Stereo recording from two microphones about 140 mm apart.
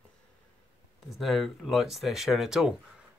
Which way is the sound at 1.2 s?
Centre (ahead or behind).